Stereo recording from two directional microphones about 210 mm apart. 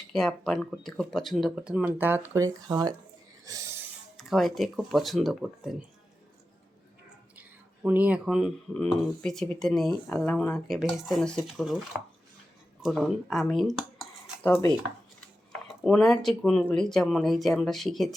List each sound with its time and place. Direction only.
0.1 s speech: centre (ahead or behind); by 2.9 s 15° right (ahead or behind)
3.4 s wheeze: 15° right (ahead or behind)
4.2 s speech: centre (ahead or behind)
7.3 s speech: 5° right (ahead or behind)